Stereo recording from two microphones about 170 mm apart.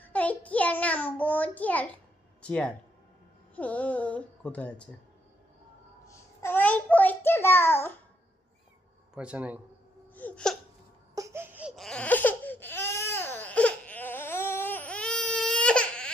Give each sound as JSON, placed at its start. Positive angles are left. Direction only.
{"t": 0.1, "sound": "child singing", "side_deg": 10}
{"t": 2.4, "sound": "speech", "side_deg": 5}
{"t": 6.1, "sound": "child singing", "side_deg": 15}
{"t": 9.1, "sound": "speech", "side_deg": -5}
{"t": 10.2, "sound": "hiccup", "side_deg": 10}
{"t": 11.1, "sound": "a sound", "side_deg": -20}
{"t": 11.8, "sound": "baby cry", "side_deg": 5}